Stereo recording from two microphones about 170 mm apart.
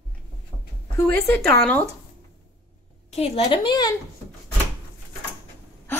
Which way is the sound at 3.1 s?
35° left (ahead or behind).